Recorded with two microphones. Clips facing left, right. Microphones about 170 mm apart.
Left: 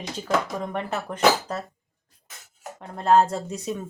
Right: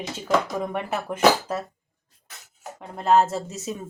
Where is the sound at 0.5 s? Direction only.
10° right (ahead or behind).